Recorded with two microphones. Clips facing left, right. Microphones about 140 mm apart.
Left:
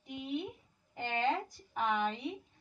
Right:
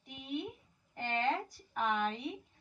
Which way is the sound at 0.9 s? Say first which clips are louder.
Left 1 dB; centre (ahead or behind).